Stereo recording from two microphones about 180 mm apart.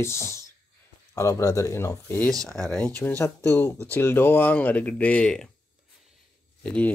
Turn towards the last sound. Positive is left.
turn(degrees=5)  # may be behind; listen again after turning